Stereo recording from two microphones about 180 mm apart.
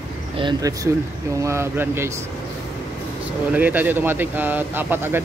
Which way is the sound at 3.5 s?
10° right (ahead or behind).